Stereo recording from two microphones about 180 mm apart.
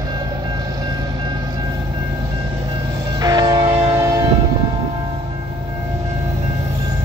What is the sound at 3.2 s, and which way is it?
Train, 20° right (ahead or behind).